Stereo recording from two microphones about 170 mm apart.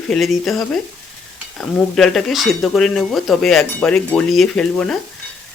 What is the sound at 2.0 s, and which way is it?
Speech, centre (ahead or behind).